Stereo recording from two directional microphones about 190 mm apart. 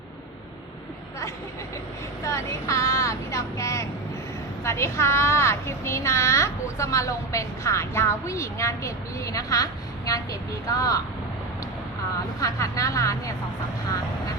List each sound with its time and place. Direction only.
2.2 s speech: 15° left (ahead or behind)
10.8 s speech: 20° left (ahead or behind)
12.4 s speech: 15° left (ahead or behind)